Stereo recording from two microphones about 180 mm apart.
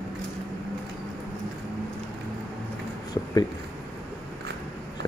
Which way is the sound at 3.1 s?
20° left (ahead or behind).